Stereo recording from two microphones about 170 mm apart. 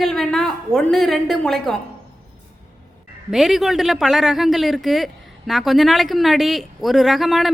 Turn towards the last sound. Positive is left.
turn(degrees=0)  # may be behind; listen again after turning